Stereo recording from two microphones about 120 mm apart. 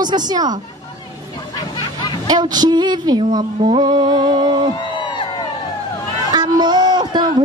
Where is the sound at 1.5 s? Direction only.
40° left (ahead or behind).